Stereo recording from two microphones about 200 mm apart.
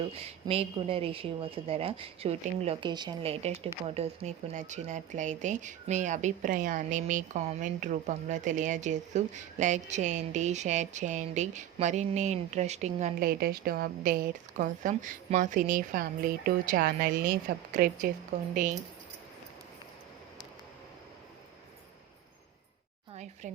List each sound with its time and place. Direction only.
0.1 s speech: 30° right (ahead or behind)
13.1 s a woman's voice: 45° right (ahead or behind)